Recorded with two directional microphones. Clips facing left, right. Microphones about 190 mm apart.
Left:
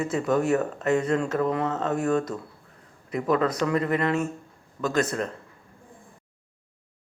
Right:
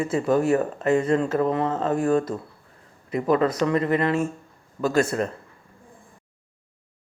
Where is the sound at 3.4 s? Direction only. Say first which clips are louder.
Right 3 dB; 25° right (ahead or behind).